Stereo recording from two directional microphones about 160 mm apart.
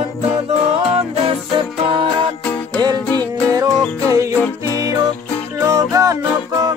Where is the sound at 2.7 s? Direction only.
25° right (ahead or behind).